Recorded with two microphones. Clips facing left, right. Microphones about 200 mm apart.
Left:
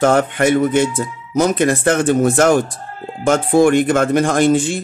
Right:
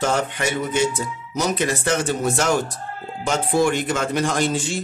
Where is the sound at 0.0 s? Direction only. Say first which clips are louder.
Left 8 dB; 55° left (ahead or behind).